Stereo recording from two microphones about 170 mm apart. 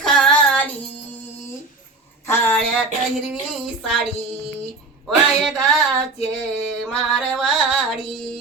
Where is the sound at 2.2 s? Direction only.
15° left (ahead or behind).